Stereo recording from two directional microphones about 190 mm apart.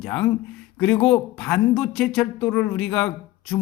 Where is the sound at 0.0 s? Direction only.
5° left (ahead or behind).